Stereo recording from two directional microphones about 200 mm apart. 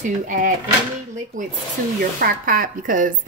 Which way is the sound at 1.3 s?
40° right (ahead or behind).